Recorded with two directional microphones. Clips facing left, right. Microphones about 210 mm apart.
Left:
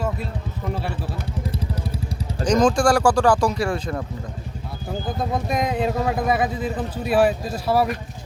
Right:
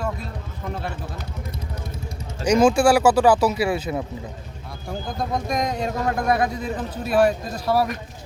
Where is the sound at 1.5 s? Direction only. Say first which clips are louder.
Left 6 dB; 30° left (ahead or behind).